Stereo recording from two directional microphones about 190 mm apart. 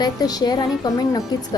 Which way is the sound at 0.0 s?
20° left (ahead or behind).